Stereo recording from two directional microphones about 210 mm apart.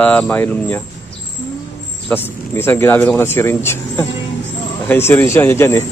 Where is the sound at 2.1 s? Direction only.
10° left (ahead or behind).